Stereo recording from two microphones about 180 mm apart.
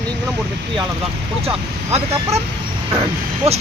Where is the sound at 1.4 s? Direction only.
35° right (ahead or behind).